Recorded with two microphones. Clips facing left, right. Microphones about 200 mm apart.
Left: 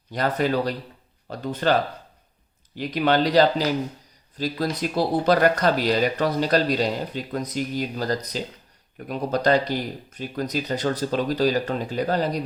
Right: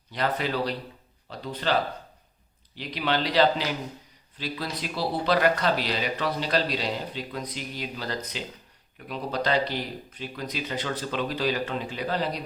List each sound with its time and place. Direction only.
0.1 s speech: 45° left (ahead or behind)
2.7 s speech: 45° left (ahead or behind)